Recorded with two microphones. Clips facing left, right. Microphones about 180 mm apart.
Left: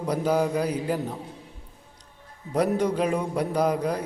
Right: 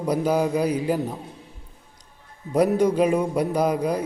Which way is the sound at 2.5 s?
10° right (ahead or behind).